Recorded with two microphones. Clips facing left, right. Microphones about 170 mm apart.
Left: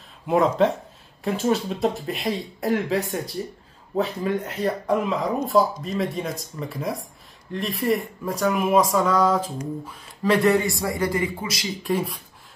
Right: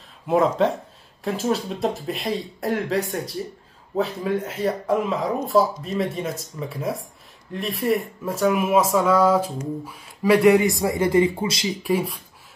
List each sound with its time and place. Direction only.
0.3 s a man's voice: centre (ahead or behind); by 11.6 s 25° right (ahead or behind)
11.6 s speech: 10° right (ahead or behind)